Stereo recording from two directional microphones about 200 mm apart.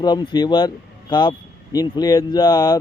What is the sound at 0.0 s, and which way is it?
A man's voice, 20° left (ahead or behind).